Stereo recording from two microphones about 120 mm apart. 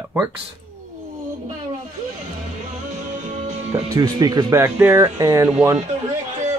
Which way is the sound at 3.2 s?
70° right (ahead or behind).